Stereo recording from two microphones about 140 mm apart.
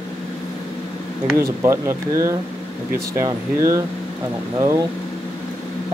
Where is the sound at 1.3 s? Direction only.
20° right (ahead or behind).